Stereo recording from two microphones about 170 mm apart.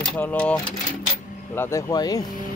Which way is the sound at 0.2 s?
10° left (ahead or behind).